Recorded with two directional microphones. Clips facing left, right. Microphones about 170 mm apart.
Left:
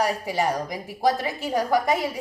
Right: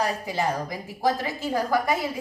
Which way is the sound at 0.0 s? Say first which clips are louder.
Left 2 dB; 15° left (ahead or behind).